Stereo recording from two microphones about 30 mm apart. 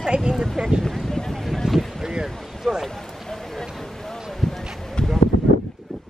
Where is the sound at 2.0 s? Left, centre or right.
Right.